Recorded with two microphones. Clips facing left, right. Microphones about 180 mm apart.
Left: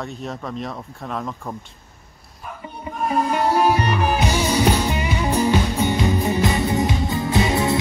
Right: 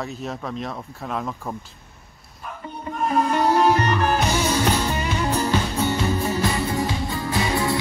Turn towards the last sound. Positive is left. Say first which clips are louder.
# left 3 dB
turn(degrees=20)  # may be behind; listen again after turning